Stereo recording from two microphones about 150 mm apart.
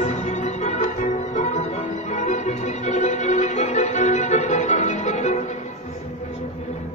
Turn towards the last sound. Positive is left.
turn(degrees=50)  # may be behind; listen again after turning